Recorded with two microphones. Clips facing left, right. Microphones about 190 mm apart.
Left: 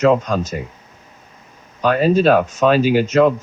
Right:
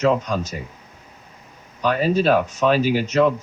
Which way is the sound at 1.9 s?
90° left.